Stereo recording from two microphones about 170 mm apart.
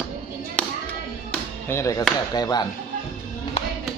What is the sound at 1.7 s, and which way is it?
Speech, 15° left (ahead or behind).